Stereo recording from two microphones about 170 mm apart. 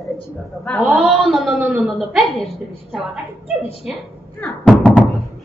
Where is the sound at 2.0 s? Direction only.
Centre (ahead or behind).